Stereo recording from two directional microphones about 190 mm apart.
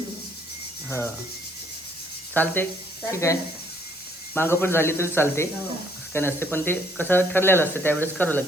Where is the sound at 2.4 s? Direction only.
10° left (ahead or behind).